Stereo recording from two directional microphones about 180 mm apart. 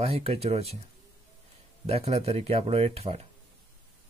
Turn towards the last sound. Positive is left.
turn(degrees=-35)  # may be behind; listen again after turning